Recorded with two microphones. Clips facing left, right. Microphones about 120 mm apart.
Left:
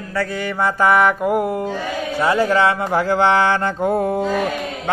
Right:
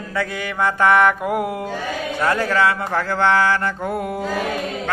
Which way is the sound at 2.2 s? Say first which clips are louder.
Left 2 dB; 15° left (ahead or behind).